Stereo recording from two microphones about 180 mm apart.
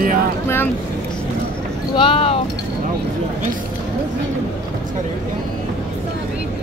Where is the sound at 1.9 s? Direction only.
30° left (ahead or behind).